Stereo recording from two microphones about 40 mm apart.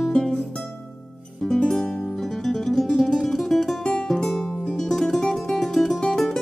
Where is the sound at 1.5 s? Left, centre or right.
Centre.